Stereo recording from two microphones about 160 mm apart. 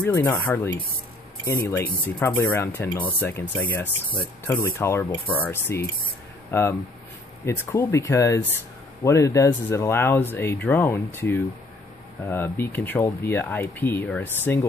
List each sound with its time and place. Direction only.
0.0 s speech: 15° left (ahead or behind)